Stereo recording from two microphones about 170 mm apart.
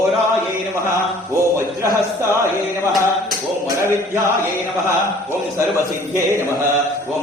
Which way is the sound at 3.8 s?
15° right (ahead or behind).